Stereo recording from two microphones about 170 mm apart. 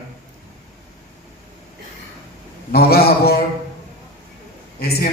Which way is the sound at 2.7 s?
65° left (ahead or behind).